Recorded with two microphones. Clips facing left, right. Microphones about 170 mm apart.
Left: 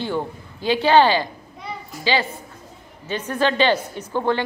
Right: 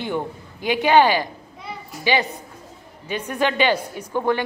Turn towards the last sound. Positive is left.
turn(degrees=-10)  # may be behind; listen again after turning